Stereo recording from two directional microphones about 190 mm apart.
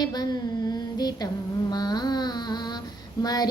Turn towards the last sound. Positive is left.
turn(degrees=20)  # may be behind; listen again after turning